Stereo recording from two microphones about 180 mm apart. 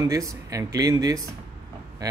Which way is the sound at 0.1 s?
20° right (ahead or behind).